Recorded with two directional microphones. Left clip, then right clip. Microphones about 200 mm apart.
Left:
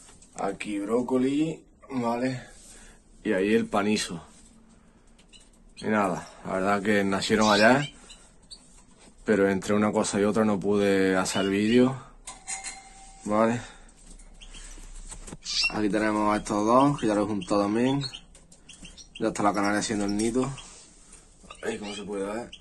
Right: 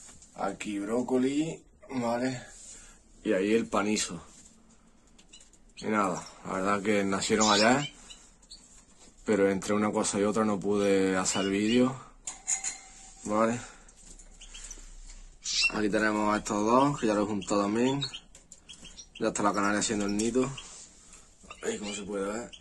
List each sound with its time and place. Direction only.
0.4 s speech: 15° right (ahead or behind)
3.2 s speech: centre (ahead or behind)
5.8 s speech: centre (ahead or behind)
9.0 s speech: centre (ahead or behind)
13.2 s speech: centre (ahead or behind)
15.7 s speech: centre (ahead or behind)
21.5 s a sound: 5° right (ahead or behind)
21.9 s speech: 5° right (ahead or behind)